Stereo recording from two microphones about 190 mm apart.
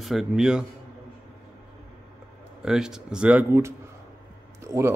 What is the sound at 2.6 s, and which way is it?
Speech, 5° right (ahead or behind).